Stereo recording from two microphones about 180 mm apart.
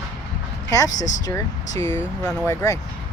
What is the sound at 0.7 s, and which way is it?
Speech, 20° left (ahead or behind).